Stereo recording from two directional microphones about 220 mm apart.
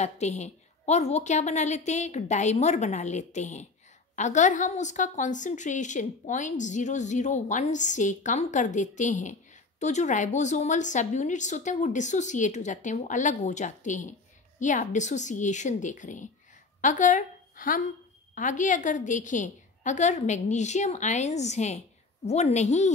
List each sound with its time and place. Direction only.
0.0 s a woman's voice: 30° left (ahead or behind)